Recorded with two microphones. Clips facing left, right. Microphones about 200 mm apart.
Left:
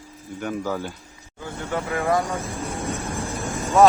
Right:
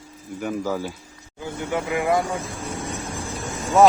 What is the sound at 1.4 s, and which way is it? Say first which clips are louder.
Speech: right 2 dB; 15° right (ahead or behind).